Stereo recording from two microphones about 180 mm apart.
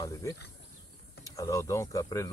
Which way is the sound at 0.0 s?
15° left (ahead or behind).